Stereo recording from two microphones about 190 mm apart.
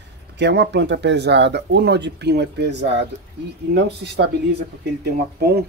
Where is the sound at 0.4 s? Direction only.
65° right (ahead or behind).